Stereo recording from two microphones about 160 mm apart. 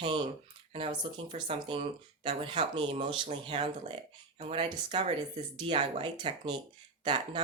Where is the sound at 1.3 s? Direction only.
35° right (ahead or behind).